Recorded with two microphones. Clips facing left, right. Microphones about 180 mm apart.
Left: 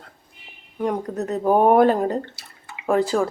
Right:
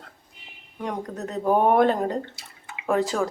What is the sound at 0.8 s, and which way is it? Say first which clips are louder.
Speech: left 6 dB; 5° left (ahead or behind).